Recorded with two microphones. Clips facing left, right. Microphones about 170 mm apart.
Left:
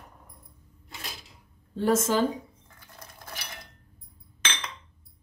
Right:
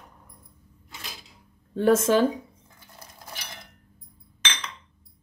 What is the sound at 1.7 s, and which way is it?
Speech, 60° right (ahead or behind).